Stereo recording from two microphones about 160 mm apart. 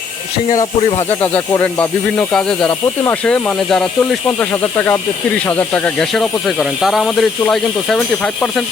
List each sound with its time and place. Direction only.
0.8 s speech: 35° left (ahead or behind)
1.2 s speech: 10° left (ahead or behind)